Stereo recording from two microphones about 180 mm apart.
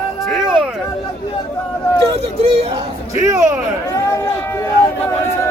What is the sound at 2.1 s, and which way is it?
Speech, 35° right (ahead or behind).